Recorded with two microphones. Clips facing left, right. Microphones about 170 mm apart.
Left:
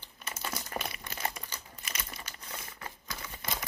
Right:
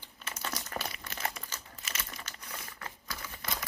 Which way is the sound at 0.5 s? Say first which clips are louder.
Left 2 dB; 25° left (ahead or behind).